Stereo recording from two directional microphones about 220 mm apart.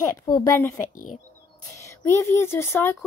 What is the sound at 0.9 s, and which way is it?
Speech, 35° left (ahead or behind).